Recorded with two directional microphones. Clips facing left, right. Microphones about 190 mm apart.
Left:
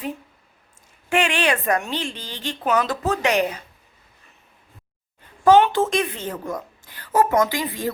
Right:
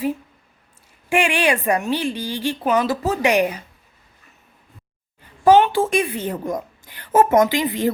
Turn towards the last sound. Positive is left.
turn(degrees=-20)  # may be behind; listen again after turning